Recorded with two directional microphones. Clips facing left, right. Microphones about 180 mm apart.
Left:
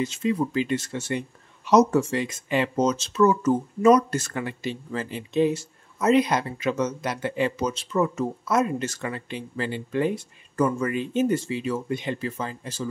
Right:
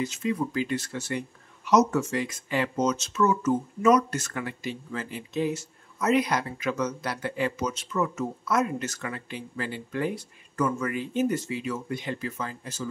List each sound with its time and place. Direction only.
0.0 s speech: 25° left (ahead or behind)